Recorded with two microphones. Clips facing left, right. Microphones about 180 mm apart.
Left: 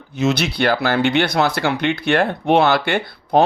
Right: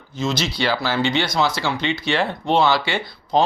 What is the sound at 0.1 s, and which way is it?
A man's voice, 65° left (ahead or behind).